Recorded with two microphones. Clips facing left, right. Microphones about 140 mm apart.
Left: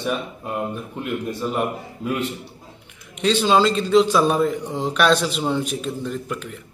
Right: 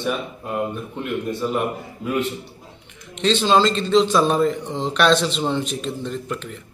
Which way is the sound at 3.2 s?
10° left (ahead or behind).